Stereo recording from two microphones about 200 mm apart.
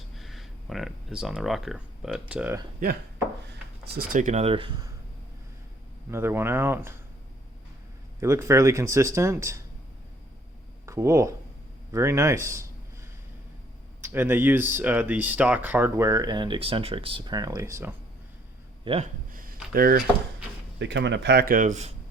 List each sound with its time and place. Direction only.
0.2 s speech: centre (ahead or behind)
3.9 s speech: 45° right (ahead or behind); by 4.9 s 25° right (ahead or behind)
6.1 s speech: 10° right (ahead or behind)
8.2 s speech: 15° right (ahead or behind)
10.8 s speech: 15° right (ahead or behind)
14.0 s speech: 10° right (ahead or behind)
18.9 s speech: 25° right (ahead or behind)
19.3 s a sound: 45° right (ahead or behind)
19.7 s speech: 45° right (ahead or behind)
20.7 s speech: 60° right (ahead or behind); by 21.9 s 35° right (ahead or behind)